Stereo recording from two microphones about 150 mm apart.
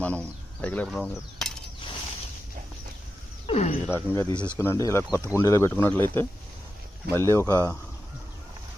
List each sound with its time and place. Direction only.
0.0 s a sound: 10° left (ahead or behind)
3.4 s speech: 50° left (ahead or behind)
3.9 s speech: 15° left (ahead or behind)